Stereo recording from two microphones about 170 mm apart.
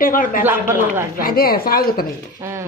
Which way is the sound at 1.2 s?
60° left (ahead or behind).